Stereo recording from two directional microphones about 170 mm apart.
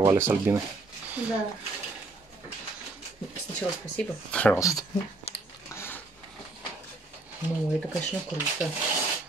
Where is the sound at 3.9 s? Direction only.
5° left (ahead or behind).